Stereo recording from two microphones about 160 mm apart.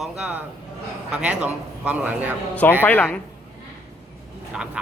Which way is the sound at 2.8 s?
10° left (ahead or behind).